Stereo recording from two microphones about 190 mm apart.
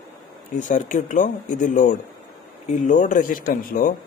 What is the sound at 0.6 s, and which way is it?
Speech, 40° left (ahead or behind).